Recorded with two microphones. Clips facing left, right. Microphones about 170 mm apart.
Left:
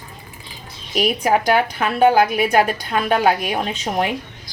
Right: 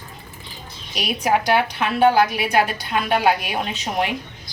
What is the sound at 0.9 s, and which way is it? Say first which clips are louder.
A woman's voice: left 3 dB; 50° left (ahead or behind).